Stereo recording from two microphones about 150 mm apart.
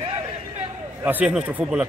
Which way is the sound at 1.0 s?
10° right (ahead or behind).